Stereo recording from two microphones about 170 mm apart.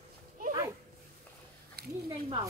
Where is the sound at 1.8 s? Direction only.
70° right (ahead or behind).